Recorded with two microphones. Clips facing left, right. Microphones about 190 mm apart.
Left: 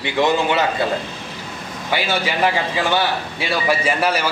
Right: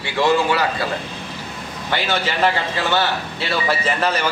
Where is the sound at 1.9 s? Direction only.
10° left (ahead or behind).